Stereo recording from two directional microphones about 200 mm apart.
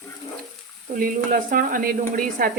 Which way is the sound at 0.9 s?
45° right (ahead or behind).